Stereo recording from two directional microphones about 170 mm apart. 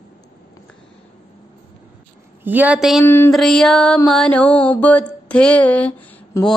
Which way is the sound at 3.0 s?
15° left (ahead or behind).